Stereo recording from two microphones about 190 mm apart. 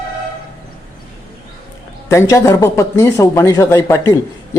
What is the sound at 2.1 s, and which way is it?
A man's voice, 15° left (ahead or behind).